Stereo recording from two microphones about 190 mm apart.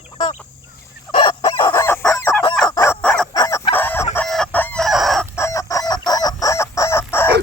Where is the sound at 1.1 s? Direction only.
30° left (ahead or behind); by 3.2 s 10° left (ahead or behind).